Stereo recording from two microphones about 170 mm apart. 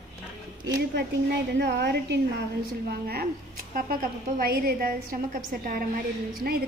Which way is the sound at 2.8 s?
65° right (ahead or behind).